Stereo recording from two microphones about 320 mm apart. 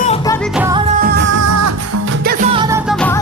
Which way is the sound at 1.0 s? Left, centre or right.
Right.